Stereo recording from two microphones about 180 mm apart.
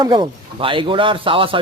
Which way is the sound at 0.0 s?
25° right (ahead or behind).